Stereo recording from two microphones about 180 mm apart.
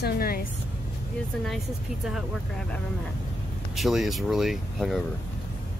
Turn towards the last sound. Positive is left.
turn(degrees=0)  # may be behind; listen again after turning